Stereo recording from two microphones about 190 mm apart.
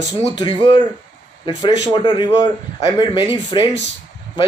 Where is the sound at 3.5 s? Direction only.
25° left (ahead or behind).